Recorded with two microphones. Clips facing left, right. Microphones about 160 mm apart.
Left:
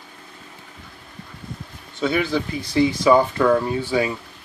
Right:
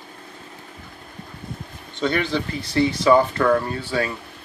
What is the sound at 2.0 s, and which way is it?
Speech, 5° left (ahead or behind).